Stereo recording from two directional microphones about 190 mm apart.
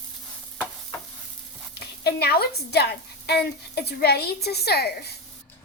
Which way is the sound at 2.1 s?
55° left (ahead or behind).